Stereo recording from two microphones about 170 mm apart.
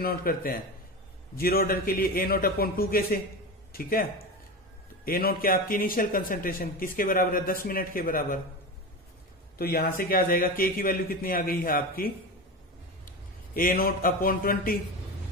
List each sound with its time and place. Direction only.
0.0 s a man's voice: 60° left (ahead or behind)
9.6 s a man's voice: 60° left (ahead or behind)
13.6 s a man's voice: 55° left (ahead or behind)